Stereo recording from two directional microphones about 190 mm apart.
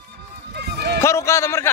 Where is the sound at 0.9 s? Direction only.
15° left (ahead or behind).